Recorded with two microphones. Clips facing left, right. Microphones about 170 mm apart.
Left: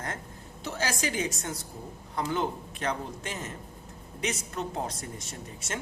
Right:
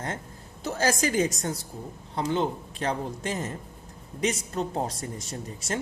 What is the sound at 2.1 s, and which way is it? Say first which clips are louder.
Speech: right 3 dB; 30° right (ahead or behind).